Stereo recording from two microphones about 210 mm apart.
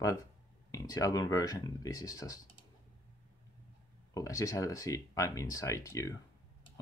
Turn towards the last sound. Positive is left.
turn(degrees=15)  # may be behind; listen again after turning